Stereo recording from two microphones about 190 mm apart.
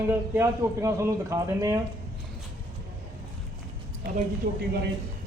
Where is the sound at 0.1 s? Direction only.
15° right (ahead or behind).